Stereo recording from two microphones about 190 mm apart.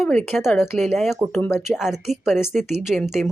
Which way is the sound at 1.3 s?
15° left (ahead or behind).